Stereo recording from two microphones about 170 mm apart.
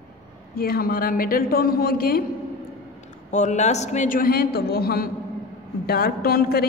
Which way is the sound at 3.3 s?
45° left (ahead or behind).